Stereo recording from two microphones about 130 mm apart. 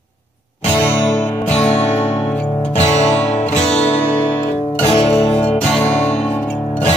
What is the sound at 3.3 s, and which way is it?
Music, 55° left (ahead or behind).